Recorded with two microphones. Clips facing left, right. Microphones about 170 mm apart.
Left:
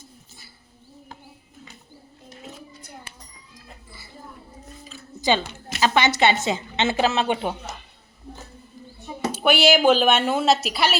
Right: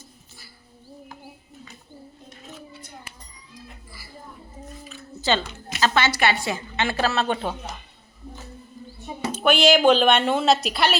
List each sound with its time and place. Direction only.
5.2 s a woman's voice: 15° left (ahead or behind)
9.3 s speech: 10° left (ahead or behind)